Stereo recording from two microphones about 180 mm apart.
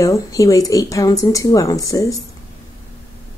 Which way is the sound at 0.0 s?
15° left (ahead or behind).